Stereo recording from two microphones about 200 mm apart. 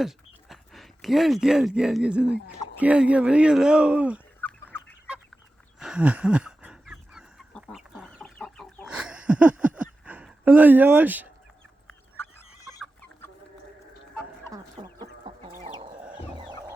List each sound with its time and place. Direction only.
0.0 s speech: centre (ahead or behind)
4.4 s fowl: 10° left (ahead or behind)
5.8 s chicken: 5° right (ahead or behind)
10.1 s speech: 10° right (ahead or behind)
11.9 s a sound: 10° left (ahead or behind)
12.8 s chicken: 10° left (ahead or behind)
14.5 s chicken: 20° right (ahead or behind)
15.8 s music: 25° right (ahead or behind)
16.1 s chicken: 20° right (ahead or behind)